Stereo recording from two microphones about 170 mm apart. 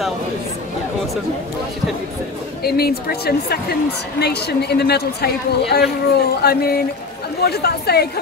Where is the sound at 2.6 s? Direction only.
65° left (ahead or behind).